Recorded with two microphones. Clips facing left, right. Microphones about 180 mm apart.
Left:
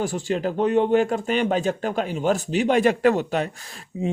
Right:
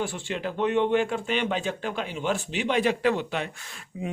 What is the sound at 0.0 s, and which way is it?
Speech, 40° left (ahead or behind).